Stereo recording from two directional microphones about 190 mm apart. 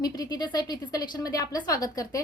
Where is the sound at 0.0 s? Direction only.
20° left (ahead or behind).